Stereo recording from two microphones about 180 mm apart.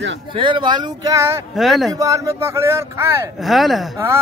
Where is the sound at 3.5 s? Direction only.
Centre (ahead or behind).